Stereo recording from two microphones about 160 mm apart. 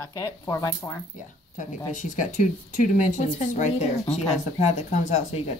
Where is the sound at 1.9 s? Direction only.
55° left (ahead or behind).